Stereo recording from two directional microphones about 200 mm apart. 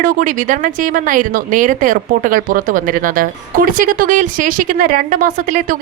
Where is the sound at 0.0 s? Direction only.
40° right (ahead or behind).